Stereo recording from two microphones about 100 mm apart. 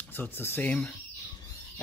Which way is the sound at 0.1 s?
20° left (ahead or behind).